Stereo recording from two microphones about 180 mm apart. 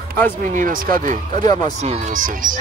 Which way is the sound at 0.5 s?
50° right (ahead or behind).